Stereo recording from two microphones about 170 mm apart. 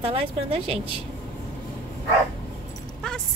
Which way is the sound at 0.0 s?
35° right (ahead or behind).